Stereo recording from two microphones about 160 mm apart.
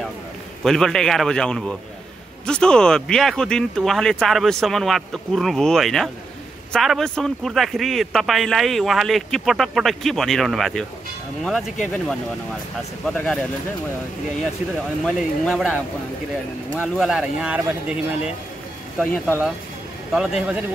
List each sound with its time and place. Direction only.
0.7 s a man's voice: 5° left (ahead or behind)
15.0 s a man's voice: 5° left (ahead or behind)
16.7 s speech: 5° right (ahead or behind)
20.1 s a man's voice: 5° right (ahead or behind)